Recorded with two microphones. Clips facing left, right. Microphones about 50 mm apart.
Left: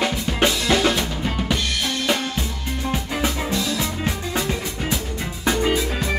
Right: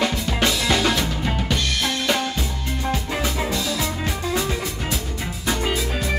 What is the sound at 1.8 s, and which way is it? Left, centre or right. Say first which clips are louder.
Music: even; centre.